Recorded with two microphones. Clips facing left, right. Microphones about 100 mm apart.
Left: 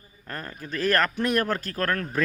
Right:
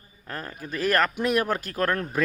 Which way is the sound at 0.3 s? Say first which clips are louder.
Right 1 dB; 5° right (ahead or behind).